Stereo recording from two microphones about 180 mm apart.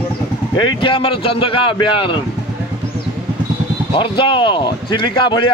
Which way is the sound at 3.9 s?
25° left (ahead or behind).